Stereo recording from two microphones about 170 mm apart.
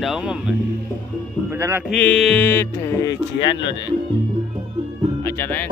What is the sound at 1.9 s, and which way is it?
Speech, 5° left (ahead or behind).